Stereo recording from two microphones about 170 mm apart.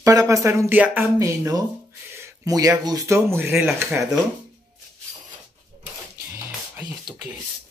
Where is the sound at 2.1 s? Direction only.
20° right (ahead or behind).